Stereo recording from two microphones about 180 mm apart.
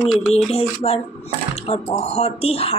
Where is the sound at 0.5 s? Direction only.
35° left (ahead or behind).